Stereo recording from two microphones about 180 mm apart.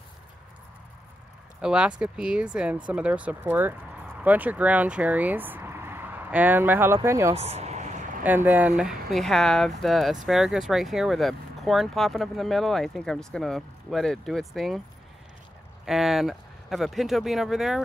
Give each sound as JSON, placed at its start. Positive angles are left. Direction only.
{"t": 1.6, "sound": "speech", "side_deg": -5}
{"t": 7.3, "sound": "a sound", "side_deg": -35}
{"t": 8.2, "sound": "speech", "side_deg": -10}
{"t": 15.8, "sound": "speech", "side_deg": 0}